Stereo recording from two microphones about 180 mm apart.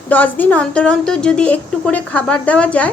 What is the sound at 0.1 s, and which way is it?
A woman's voice, 10° left (ahead or behind).